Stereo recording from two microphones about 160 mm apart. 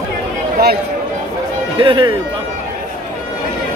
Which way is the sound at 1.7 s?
30° right (ahead or behind).